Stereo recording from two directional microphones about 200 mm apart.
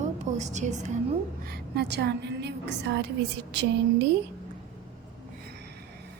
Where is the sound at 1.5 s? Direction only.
55° right (ahead or behind).